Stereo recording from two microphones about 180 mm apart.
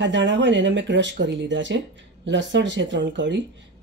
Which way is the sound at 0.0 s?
90° right.